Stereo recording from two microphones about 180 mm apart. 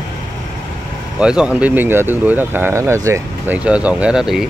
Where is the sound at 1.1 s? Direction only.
5° right (ahead or behind).